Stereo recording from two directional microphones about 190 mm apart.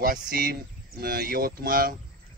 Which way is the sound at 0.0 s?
50° right (ahead or behind).